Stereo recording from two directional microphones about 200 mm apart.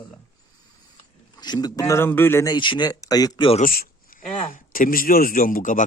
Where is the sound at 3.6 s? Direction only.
45° left (ahead or behind).